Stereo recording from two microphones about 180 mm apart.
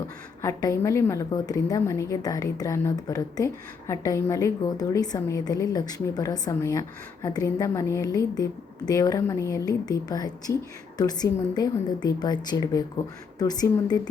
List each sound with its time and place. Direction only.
0.4 s a woman's voice: 15° left (ahead or behind)